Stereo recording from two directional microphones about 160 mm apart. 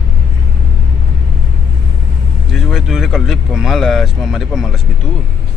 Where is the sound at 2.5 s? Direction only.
5° right (ahead or behind).